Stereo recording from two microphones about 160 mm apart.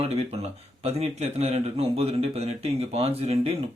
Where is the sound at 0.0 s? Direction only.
40° right (ahead or behind).